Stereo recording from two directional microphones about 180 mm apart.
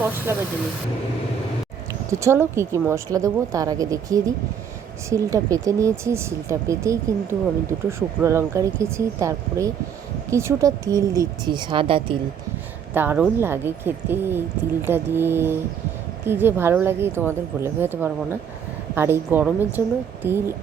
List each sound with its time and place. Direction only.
2.0 s speech: 15° right (ahead or behind)
12.9 s speech: 10° right (ahead or behind)